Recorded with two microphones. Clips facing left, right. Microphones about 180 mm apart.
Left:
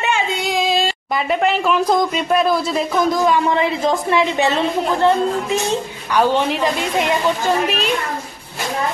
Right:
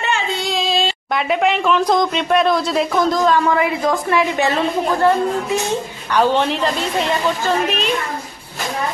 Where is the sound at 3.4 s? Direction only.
25° left (ahead or behind).